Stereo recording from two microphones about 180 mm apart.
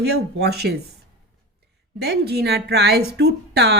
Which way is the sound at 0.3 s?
65° right (ahead or behind).